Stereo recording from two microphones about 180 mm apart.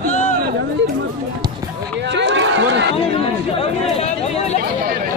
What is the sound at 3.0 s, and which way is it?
Chatter, 35° left (ahead or behind).